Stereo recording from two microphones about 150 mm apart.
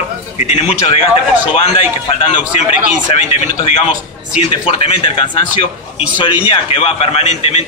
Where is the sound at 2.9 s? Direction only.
50° left (ahead or behind).